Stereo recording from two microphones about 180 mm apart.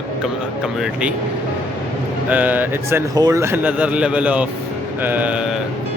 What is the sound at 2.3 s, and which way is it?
Speech, 10° right (ahead or behind).